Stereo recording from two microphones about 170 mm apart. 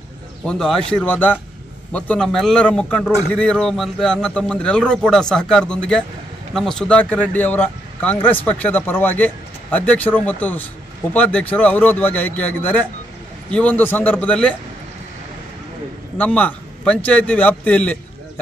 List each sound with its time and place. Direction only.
0.5 s a man's voice: 5° left (ahead or behind)
16.2 s speech: 10° left (ahead or behind)